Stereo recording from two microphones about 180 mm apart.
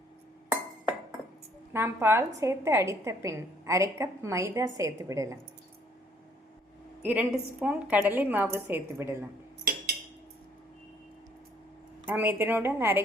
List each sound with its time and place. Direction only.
1.7 s a woman's voice: 15° right (ahead or behind)
7.0 s a woman's voice: 10° right (ahead or behind)
12.0 s a woman's voice: 10° right (ahead or behind)